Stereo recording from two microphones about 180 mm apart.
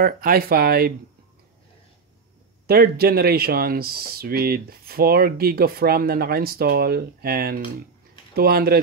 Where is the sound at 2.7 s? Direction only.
55° right (ahead or behind).